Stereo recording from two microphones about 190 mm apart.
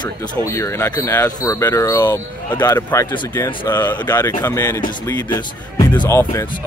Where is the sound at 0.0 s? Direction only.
15° left (ahead or behind).